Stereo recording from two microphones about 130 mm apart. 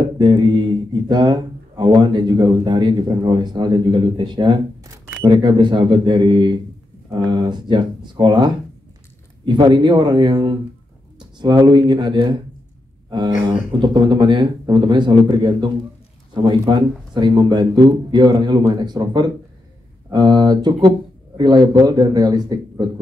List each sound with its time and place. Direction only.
0.0 s speech: 35° right (ahead or behind)
11.6 s speech: 35° right (ahead or behind)
13.5 s speech: 35° right (ahead or behind)